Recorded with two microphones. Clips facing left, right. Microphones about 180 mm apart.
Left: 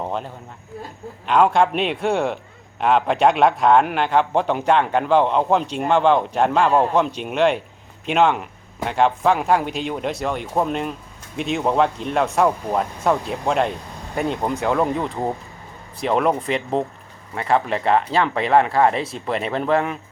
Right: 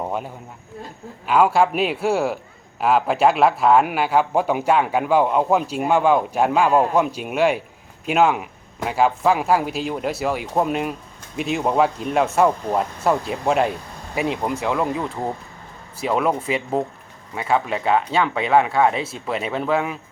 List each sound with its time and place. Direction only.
1.2 s a man's voice: 5° right (ahead or behind)